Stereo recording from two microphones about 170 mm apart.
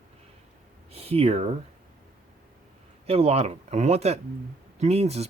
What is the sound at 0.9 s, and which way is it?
Speech, 35° right (ahead or behind).